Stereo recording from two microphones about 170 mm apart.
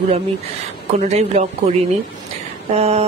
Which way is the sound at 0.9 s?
40° right (ahead or behind).